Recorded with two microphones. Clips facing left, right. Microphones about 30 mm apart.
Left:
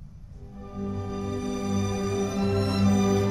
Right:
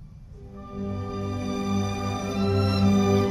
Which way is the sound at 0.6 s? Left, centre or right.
Centre.